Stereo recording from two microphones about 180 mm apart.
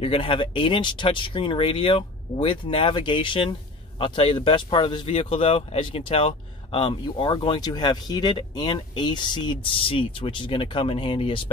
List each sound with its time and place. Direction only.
0.0 s speech: 30° left (ahead or behind)